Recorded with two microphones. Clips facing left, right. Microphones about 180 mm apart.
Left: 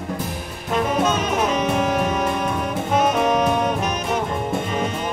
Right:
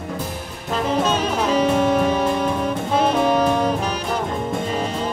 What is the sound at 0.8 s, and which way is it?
Music, 30° right (ahead or behind).